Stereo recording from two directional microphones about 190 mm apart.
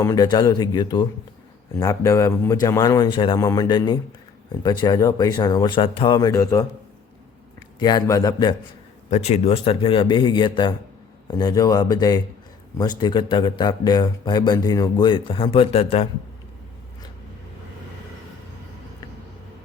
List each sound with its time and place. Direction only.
0.0 s a man's voice: 20° left (ahead or behind)
6.1 s a man's voice: 15° left (ahead or behind)
7.8 s a man's voice: 20° left (ahead or behind)
9.0 s a man's voice: 35° left (ahead or behind)